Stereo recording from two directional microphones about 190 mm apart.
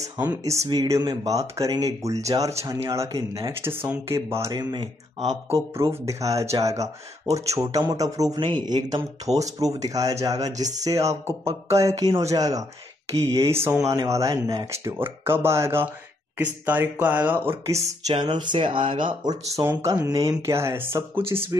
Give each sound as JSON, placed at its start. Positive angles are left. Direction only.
{"t": 0.0, "sound": "speech", "side_deg": -10}